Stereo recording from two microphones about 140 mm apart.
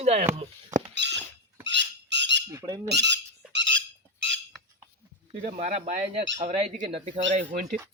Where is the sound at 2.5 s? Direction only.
25° right (ahead or behind).